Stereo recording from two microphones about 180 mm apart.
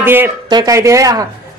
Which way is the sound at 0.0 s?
10° right (ahead or behind).